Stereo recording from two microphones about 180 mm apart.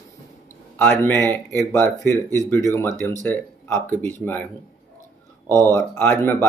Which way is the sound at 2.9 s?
20° right (ahead or behind).